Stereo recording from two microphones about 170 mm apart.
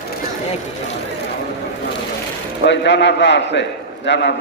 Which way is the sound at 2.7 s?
90° left.